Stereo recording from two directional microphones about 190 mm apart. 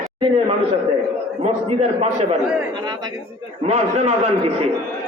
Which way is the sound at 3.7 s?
35° right (ahead or behind).